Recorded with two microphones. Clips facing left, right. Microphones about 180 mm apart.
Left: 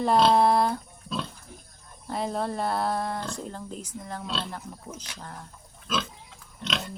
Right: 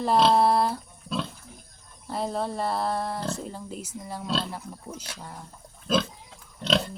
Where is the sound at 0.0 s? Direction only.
Centre (ahead or behind).